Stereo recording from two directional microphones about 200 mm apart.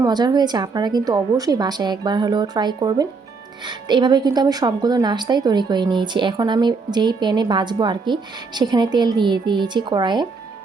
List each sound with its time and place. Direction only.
0.0 s a woman's voice: 20° right (ahead or behind)